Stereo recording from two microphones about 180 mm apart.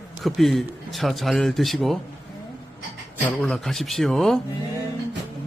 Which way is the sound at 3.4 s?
5° left (ahead or behind).